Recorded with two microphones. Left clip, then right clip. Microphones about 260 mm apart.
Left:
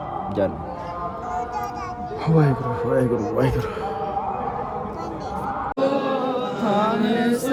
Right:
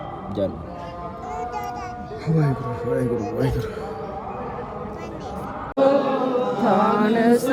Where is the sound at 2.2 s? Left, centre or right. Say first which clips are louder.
Left 4 dB; centre.